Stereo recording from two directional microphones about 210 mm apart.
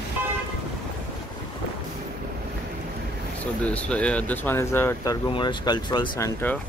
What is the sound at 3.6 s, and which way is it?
Speech, 5° left (ahead or behind).